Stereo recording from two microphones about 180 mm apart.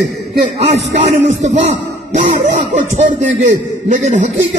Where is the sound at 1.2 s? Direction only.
40° right (ahead or behind).